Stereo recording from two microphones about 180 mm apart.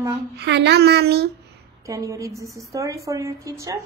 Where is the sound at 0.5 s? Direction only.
70° right (ahead or behind).